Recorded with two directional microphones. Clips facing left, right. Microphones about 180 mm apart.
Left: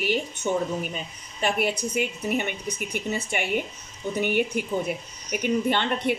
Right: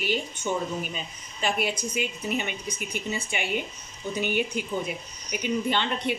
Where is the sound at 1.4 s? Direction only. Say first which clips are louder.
Left 3 dB; 55° left (ahead or behind).